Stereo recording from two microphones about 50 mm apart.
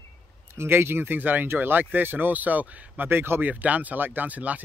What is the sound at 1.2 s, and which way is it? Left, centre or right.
Speech, right.